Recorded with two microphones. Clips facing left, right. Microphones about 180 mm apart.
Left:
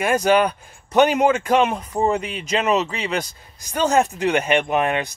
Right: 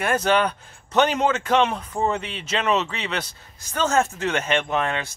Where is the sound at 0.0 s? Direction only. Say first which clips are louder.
Left 3 dB; 10° left (ahead or behind).